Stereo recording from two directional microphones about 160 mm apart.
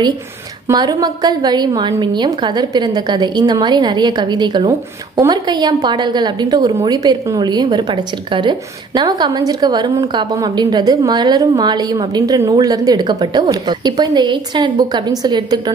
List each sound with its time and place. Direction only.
0.7 s a woman's voice: 20° right (ahead or behind)